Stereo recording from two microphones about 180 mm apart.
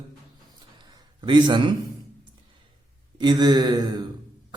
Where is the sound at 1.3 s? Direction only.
25° right (ahead or behind).